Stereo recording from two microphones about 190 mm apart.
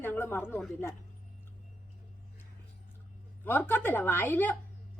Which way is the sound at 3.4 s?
10° left (ahead or behind).